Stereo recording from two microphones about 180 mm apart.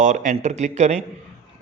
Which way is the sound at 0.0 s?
45° right (ahead or behind).